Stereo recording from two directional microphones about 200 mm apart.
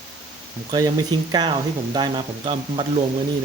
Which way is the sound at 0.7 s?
20° right (ahead or behind).